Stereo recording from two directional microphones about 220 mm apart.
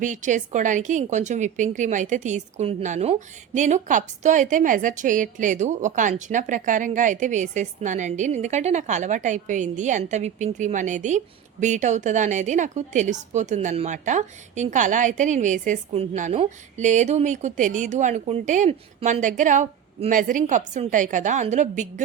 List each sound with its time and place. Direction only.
0.0 s a woman's voice: 35° right (ahead or behind)